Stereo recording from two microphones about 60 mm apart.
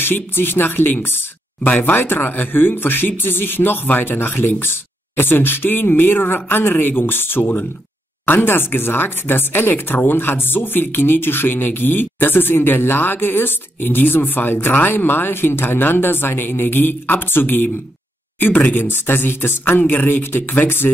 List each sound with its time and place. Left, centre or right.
0.0 s speech: left